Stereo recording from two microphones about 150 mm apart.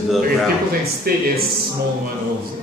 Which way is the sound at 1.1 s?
85° right.